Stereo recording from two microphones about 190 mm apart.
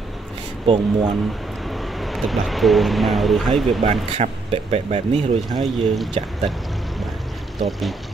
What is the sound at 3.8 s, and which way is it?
Speech, 30° right (ahead or behind).